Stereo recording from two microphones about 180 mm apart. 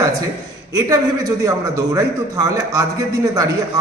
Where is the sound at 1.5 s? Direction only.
20° right (ahead or behind).